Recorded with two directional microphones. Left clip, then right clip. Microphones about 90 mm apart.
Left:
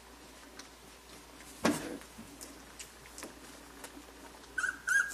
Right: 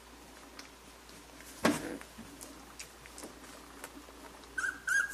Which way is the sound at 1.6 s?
5° right (ahead or behind).